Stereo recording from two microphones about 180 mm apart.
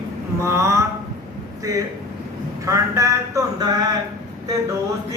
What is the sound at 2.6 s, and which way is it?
Speech, 15° right (ahead or behind).